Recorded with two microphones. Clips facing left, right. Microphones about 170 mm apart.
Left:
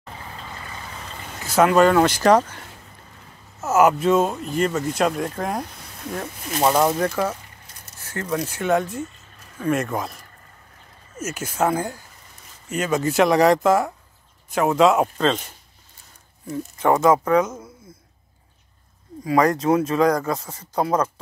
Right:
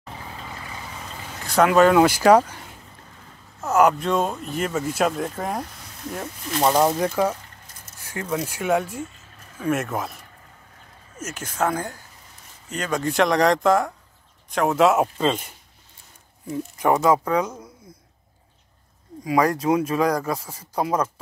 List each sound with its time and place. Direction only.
0.0 s vehicle: 5° right (ahead or behind)
3.6 s speech: 5° left (ahead or behind)
7.2 s speech: 10° right (ahead or behind)
16.7 s speech: 15° right (ahead or behind)
19.2 s speech: 10° right (ahead or behind)